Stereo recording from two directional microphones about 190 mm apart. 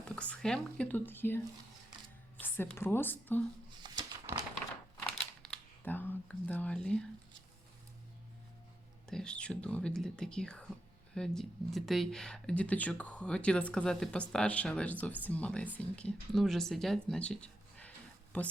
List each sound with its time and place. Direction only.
0.2 s speech: 5° left (ahead or behind)
2.4 s a woman's voice: 10° left (ahead or behind)
3.8 s a sound: 20° right (ahead or behind)
5.0 s camera: 5° left (ahead or behind)
9.0 s speech: 5° left (ahead or behind)